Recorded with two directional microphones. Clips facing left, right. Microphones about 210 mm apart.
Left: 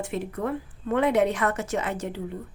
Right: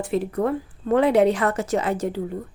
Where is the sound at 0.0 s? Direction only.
35° right (ahead or behind).